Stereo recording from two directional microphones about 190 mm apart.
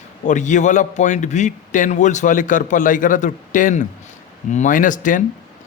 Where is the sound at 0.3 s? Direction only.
40° left (ahead or behind).